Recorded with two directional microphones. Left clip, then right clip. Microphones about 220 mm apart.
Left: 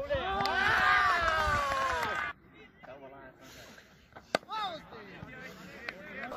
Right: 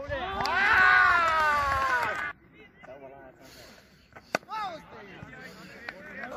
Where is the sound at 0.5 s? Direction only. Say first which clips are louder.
Right 6 dB; 15° right (ahead or behind).